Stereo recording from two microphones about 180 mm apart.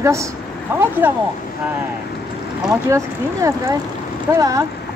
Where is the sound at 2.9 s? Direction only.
15° right (ahead or behind).